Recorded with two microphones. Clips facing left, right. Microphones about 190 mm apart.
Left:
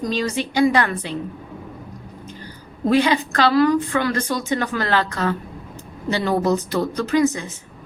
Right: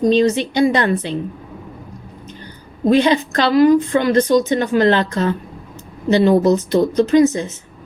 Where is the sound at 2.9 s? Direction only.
25° right (ahead or behind).